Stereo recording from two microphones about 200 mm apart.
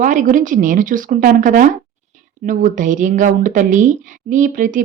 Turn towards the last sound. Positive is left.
turn(degrees=-40)  # may be behind; listen again after turning